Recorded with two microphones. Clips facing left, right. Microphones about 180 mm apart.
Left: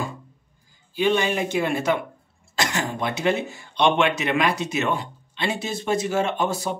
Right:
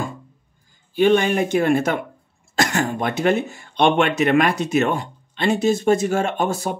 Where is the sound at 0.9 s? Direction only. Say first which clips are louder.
Right 5 dB; 50° right (ahead or behind).